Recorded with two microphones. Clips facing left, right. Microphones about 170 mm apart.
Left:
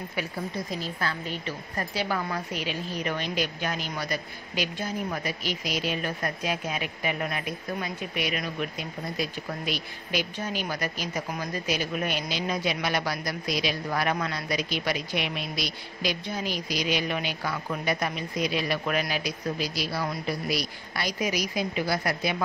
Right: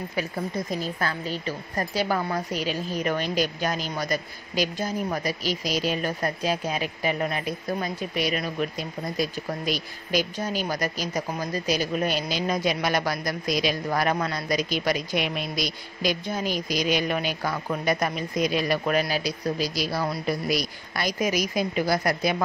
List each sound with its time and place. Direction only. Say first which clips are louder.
0.9 s a woman's voice: right 3 dB; 40° right (ahead or behind)